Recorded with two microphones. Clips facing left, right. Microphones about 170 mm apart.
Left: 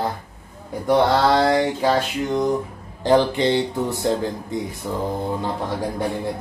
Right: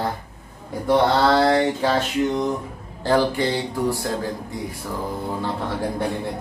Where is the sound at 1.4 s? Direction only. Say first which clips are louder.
Even; 10° left (ahead or behind).